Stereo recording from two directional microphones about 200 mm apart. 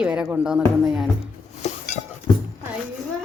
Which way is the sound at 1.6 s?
35° left (ahead or behind).